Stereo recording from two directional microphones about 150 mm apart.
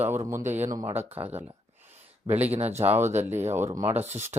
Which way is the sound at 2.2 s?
10° right (ahead or behind).